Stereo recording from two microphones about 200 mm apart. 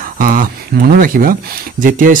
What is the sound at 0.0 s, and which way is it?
Speech, 45° right (ahead or behind).